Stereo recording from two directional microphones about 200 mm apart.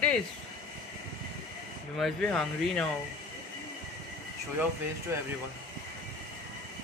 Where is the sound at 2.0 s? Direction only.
5° left (ahead or behind).